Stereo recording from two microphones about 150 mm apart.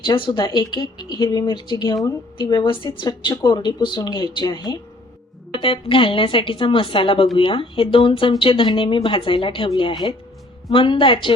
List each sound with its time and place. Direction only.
0.0 s a woman's voice: 35° left (ahead or behind)